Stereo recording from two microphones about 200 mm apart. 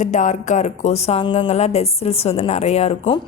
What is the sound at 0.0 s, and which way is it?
Speech, 35° left (ahead or behind).